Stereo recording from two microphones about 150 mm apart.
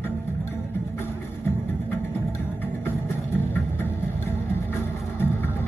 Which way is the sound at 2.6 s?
15° left (ahead or behind).